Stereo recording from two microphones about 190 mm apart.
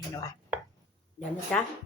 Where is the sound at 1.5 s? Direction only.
5° left (ahead or behind).